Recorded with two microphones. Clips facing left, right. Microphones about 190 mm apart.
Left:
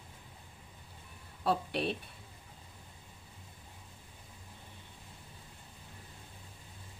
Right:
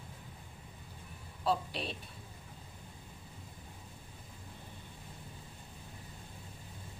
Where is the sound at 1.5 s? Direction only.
60° left (ahead or behind).